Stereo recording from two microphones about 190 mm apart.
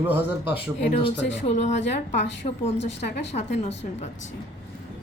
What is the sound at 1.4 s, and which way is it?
Speech, 35° left (ahead or behind).